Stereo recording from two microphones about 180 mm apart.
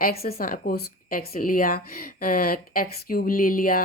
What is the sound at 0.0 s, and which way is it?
A woman's voice, 55° left (ahead or behind).